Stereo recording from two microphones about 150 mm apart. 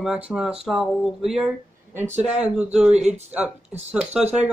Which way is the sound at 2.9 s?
50° right (ahead or behind).